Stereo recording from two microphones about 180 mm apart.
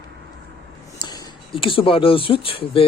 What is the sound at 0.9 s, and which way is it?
Speech, 20° left (ahead or behind).